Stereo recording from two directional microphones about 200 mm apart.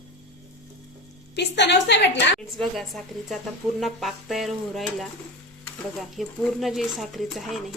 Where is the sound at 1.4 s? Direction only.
60° left (ahead or behind).